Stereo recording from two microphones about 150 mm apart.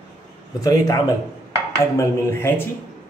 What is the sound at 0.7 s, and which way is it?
A man's voice, 25° left (ahead or behind).